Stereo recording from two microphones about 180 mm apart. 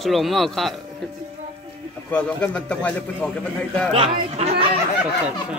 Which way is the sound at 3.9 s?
35° right (ahead or behind).